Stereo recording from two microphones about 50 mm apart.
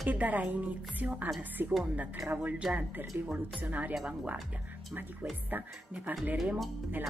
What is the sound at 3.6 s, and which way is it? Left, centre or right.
Speech, right.